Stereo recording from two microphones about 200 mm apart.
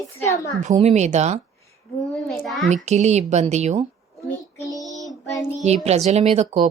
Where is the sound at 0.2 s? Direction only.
15° left (ahead or behind).